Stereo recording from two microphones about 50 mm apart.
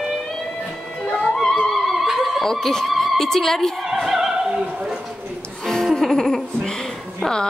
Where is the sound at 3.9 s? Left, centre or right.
Centre.